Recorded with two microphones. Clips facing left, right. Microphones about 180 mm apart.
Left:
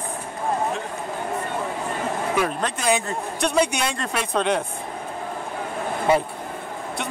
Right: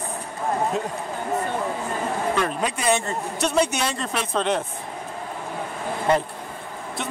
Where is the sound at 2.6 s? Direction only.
Centre (ahead or behind).